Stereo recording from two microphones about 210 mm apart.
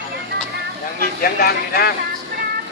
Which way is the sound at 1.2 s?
45° left (ahead or behind).